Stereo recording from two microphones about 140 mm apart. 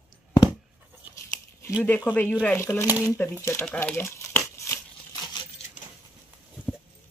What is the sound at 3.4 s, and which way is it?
Speech, 20° left (ahead or behind).